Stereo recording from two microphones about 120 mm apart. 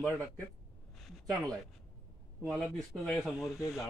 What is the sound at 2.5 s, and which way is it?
Speech, 5° left (ahead or behind).